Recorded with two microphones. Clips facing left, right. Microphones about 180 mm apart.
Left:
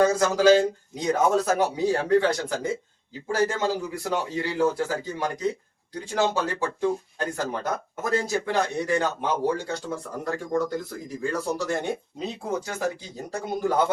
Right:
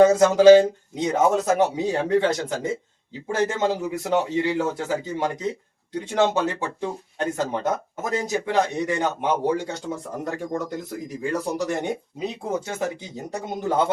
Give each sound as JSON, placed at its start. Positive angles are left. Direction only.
{"t": 0.0, "sound": "speech", "side_deg": -20}